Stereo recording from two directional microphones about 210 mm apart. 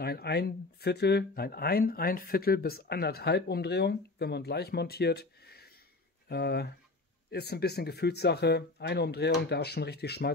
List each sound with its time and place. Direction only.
0.0 s speech: 50° left (ahead or behind)